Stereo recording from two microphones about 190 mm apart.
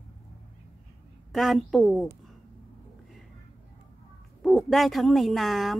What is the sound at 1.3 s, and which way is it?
Speech, centre (ahead or behind).